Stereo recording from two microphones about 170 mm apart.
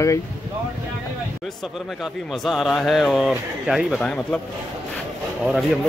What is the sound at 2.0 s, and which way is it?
Speech, centre (ahead or behind).